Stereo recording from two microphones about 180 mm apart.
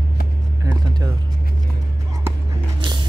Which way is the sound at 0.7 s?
20° right (ahead or behind).